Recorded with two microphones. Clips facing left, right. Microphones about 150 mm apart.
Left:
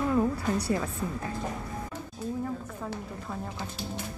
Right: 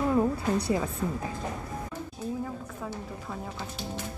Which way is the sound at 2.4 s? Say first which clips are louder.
Left 2 dB; centre (ahead or behind).